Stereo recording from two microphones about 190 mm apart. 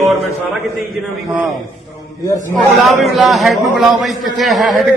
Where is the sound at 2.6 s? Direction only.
Centre (ahead or behind).